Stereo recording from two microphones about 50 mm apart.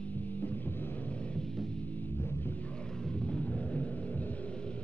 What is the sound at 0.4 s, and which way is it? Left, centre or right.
Music, left.